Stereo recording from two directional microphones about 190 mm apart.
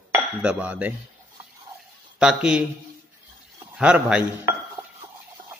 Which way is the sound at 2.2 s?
5° right (ahead or behind).